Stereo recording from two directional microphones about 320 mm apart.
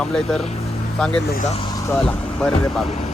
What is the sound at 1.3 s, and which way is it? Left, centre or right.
Speech, left.